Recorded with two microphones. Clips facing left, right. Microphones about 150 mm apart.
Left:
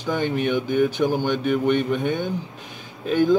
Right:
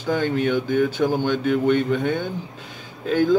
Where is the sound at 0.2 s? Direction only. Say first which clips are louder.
Right 1 dB; 15° left (ahead or behind).